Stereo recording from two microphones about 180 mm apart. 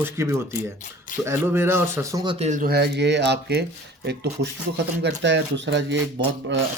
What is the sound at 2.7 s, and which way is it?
Speech, 65° right (ahead or behind).